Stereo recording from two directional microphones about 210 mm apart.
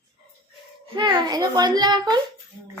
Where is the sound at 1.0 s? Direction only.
20° right (ahead or behind).